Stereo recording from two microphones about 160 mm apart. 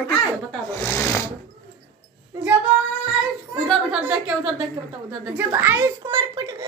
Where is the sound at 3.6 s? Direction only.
5° right (ahead or behind).